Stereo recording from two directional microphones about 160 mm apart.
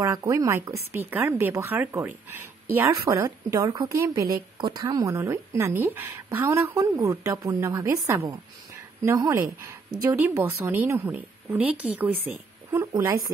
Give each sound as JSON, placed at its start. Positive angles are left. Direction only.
{"t": 0.0, "sound": "a woman's voice", "side_deg": -20}